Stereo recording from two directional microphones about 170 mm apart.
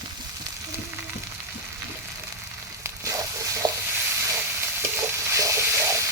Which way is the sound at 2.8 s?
15° right (ahead or behind).